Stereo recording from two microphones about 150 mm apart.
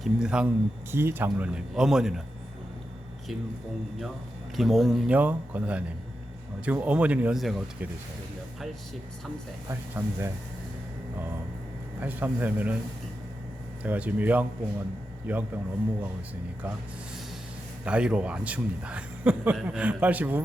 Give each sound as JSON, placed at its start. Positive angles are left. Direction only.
{"t": 0.0, "sound": "a man's voice", "side_deg": -5}
{"t": 0.9, "sound": "a man's voice", "side_deg": -15}
{"t": 4.5, "sound": "speech", "side_deg": 0}
{"t": 9.6, "sound": "speech", "side_deg": -20}
{"t": 11.9, "sound": "speech", "side_deg": -10}
{"t": 13.8, "sound": "speech", "side_deg": -10}
{"t": 17.8, "sound": "speech", "side_deg": -10}